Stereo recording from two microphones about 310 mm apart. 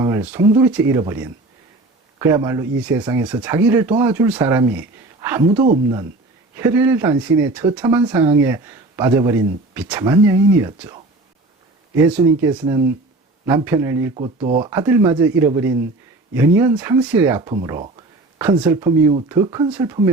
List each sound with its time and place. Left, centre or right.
0.0 s speech: centre
12.5 s speech: centre